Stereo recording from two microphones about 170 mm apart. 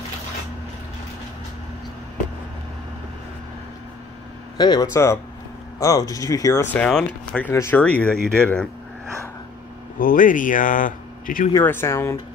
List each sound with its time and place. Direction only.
4.6 s speech: 25° left (ahead or behind); by 8.6 s 5° left (ahead or behind)
9.9 s speech: 55° left (ahead or behind)
11.5 s speech: 15° left (ahead or behind)